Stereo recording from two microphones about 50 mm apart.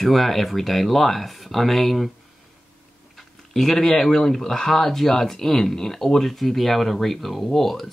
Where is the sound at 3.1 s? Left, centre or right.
Centre.